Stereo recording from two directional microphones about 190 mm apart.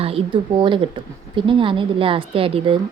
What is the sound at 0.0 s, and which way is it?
Speech, 30° right (ahead or behind).